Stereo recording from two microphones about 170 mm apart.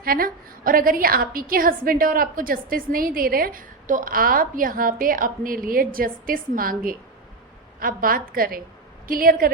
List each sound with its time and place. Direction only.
0.0 s a woman's voice: 60° right (ahead or behind)